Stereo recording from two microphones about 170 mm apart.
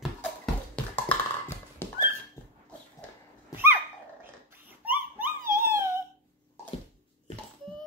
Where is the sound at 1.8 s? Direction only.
15° left (ahead or behind).